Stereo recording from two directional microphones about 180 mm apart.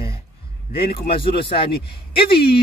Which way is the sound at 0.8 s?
60° left (ahead or behind).